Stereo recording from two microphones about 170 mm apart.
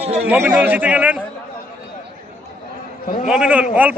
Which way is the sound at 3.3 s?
5° right (ahead or behind).